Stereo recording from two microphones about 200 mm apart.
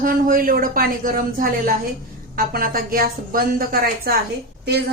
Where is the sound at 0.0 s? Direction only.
45° right (ahead or behind).